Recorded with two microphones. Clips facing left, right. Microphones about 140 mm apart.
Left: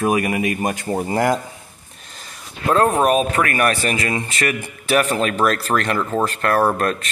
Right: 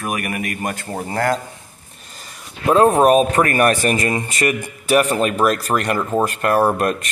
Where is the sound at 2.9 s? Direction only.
35° right (ahead or behind).